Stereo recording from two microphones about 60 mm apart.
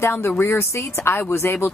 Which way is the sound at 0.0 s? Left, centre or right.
Left.